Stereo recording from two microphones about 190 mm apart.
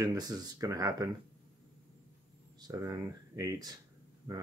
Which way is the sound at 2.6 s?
20° right (ahead or behind).